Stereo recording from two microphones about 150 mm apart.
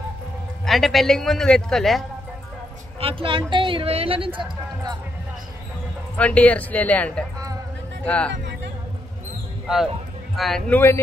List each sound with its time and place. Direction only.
0.7 s a man's voice: centre (ahead or behind)
3.0 s speech: 35° right (ahead or behind)
6.1 s speech: 10° left (ahead or behind)
10.3 s speech: centre (ahead or behind)
10.7 s speech: 15° left (ahead or behind)